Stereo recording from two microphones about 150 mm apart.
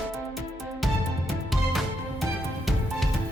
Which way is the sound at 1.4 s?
Centre (ahead or behind).